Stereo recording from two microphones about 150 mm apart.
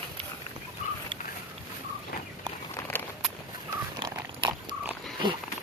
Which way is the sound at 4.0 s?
30° right (ahead or behind).